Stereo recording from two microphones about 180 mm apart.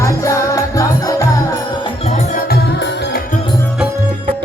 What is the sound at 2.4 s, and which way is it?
Music, 65° left (ahead or behind).